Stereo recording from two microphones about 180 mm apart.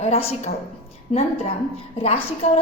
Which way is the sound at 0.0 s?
35° left (ahead or behind).